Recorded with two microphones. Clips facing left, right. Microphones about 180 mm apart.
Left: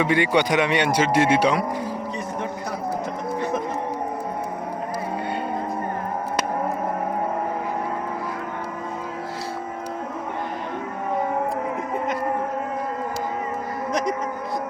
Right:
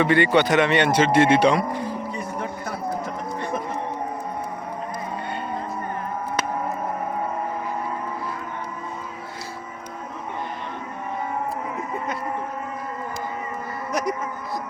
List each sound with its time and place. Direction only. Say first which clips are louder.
0.0 s speech: right 2 dB; 10° left (ahead or behind)